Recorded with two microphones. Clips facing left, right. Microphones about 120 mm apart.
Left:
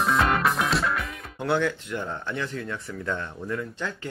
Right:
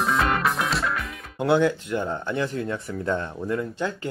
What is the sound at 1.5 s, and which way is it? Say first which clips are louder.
Speech: right 5 dB; 15° right (ahead or behind).